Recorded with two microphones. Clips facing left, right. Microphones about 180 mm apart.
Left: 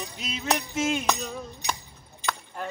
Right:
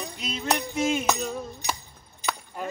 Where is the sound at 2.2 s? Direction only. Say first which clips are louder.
Right 1 dB; 5° right (ahead or behind).